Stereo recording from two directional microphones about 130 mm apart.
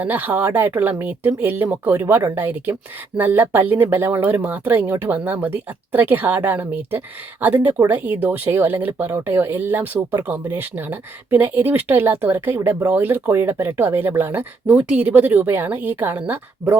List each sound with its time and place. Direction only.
0.0 s speech: 15° right (ahead or behind)